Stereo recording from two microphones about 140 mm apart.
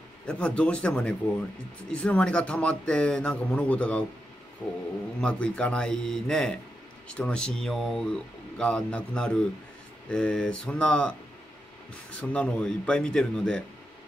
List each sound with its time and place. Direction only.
0.3 s speech: 10° left (ahead or behind)
12.2 s speech: 10° left (ahead or behind)